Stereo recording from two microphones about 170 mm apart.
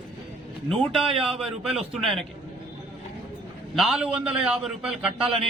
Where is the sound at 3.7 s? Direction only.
Centre (ahead or behind).